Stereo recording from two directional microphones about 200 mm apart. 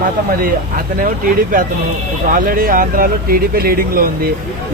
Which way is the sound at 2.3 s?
45° right (ahead or behind).